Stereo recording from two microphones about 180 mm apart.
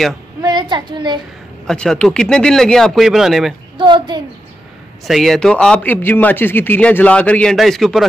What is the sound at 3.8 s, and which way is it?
Speech, 25° right (ahead or behind).